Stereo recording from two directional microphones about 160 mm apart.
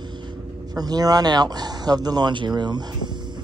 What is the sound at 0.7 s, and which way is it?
Speech, 25° right (ahead or behind).